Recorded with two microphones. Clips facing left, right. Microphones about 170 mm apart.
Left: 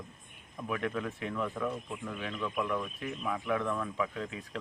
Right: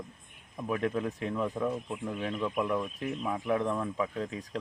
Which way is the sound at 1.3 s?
20° right (ahead or behind).